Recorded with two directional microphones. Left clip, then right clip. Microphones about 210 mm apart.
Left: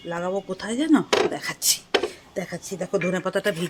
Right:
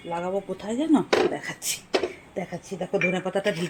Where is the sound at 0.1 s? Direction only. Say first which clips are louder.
Left 1 dB; 25° left (ahead or behind).